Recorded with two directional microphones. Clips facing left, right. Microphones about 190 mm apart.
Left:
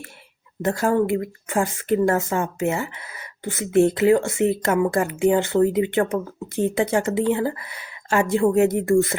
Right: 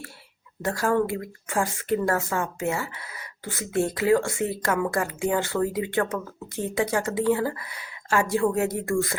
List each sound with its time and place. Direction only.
0.6 s speech: 25° left (ahead or behind)